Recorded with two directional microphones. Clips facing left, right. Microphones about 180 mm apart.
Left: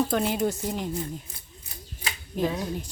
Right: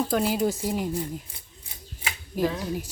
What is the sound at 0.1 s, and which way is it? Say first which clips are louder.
Speech: right 1 dB; centre (ahead or behind).